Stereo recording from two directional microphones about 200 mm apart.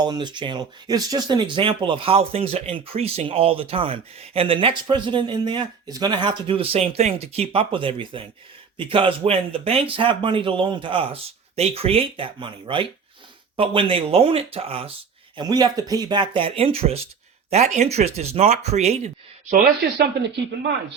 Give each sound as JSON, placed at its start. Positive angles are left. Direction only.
{"t": 0.0, "sound": "speech", "side_deg": -20}